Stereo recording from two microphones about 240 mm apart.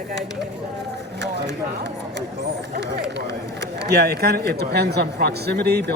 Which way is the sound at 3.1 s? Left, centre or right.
Right.